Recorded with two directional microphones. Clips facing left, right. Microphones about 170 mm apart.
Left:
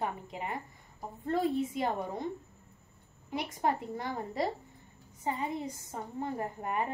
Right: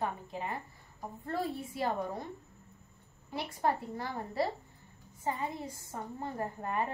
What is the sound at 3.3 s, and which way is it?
A woman's voice, 20° left (ahead or behind).